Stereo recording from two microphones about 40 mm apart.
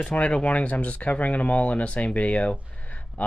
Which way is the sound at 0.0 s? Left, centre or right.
Left.